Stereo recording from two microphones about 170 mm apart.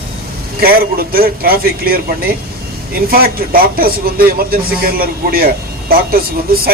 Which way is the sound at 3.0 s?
60° right (ahead or behind).